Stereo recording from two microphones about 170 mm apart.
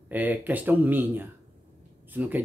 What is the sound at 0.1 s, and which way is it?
Speech, 10° right (ahead or behind).